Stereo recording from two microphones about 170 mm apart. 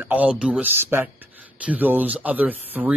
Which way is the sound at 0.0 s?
10° right (ahead or behind).